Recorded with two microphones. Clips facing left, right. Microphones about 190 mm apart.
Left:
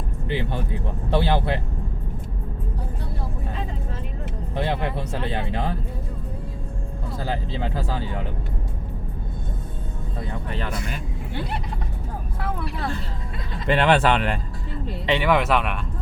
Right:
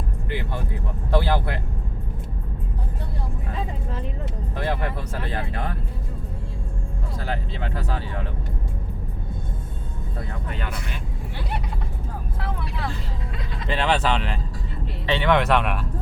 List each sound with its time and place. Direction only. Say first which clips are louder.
0.3 s speech: left 4 dB; 20° left (ahead or behind)
4.5 s speech: left 2 dB; 25° left (ahead or behind)
13.7 s speech: left 4 dB; 55° left (ahead or behind)
15.0 s speech: left 2 dB; 15° left (ahead or behind)
15.3 s speech: right 3 dB; centre (ahead or behind)